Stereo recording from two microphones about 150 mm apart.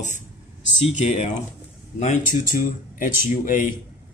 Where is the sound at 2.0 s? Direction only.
60° left (ahead or behind).